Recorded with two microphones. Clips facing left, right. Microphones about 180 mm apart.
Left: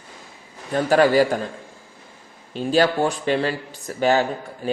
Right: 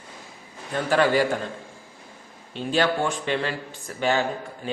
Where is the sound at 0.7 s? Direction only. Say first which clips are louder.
Left 5 dB; 40° left (ahead or behind).